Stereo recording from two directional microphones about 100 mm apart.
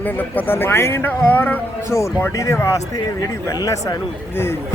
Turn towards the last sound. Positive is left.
turn(degrees=35)  # may be behind; listen again after turning